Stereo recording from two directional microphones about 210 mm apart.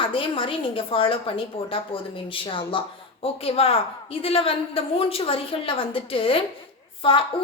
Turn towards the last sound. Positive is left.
turn(degrees=25)  # may be behind; listen again after turning